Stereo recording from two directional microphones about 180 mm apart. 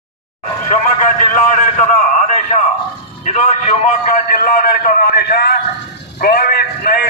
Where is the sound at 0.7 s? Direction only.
45° left (ahead or behind).